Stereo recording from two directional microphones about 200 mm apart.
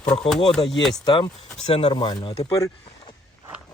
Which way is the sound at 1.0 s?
25° left (ahead or behind).